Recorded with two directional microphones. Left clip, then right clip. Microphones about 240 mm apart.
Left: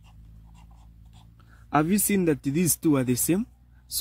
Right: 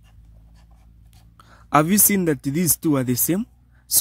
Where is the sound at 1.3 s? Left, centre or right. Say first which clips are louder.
Right 7 dB; right.